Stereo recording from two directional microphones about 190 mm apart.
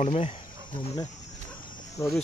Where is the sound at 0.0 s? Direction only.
35° left (ahead or behind).